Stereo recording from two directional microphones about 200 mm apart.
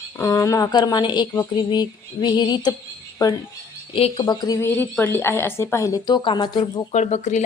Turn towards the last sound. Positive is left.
turn(degrees=35)  # may be behind; listen again after turning